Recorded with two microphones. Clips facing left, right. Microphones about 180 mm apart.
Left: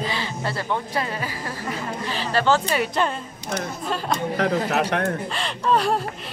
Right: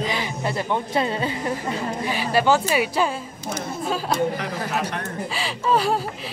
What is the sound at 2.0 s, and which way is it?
A woman's voice, 10° right (ahead or behind).